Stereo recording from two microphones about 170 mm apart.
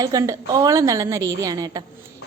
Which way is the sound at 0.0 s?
20° right (ahead or behind).